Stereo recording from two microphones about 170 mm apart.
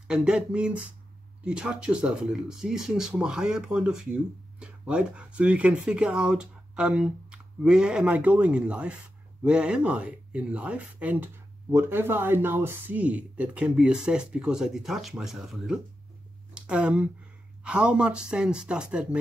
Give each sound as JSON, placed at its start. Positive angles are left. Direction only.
{"t": 0.1, "sound": "speech", "side_deg": -5}